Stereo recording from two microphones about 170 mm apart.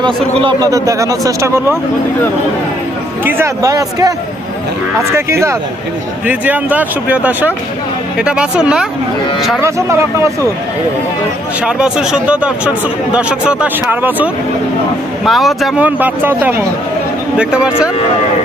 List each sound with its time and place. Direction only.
0.0 s speech: 30° right (ahead or behind)
3.2 s speech: 15° right (ahead or behind)
5.1 s speech: 15° right (ahead or behind)
9.6 s speech: 15° right (ahead or behind)
11.6 s speech: 5° right (ahead or behind)